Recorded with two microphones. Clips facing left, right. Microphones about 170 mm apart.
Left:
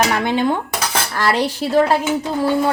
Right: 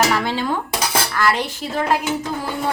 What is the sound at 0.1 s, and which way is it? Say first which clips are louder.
Dishes: left 3 dB; 20° left (ahead or behind).